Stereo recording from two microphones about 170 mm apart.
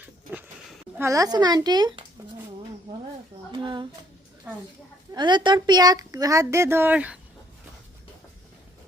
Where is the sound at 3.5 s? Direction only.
30° right (ahead or behind).